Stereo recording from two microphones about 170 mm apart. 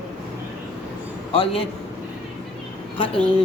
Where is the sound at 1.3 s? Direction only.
35° left (ahead or behind).